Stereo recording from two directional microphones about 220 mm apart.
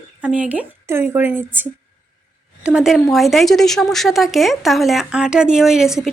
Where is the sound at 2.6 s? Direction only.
5° right (ahead or behind).